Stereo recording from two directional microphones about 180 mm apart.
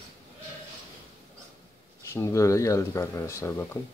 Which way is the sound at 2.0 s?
15° left (ahead or behind).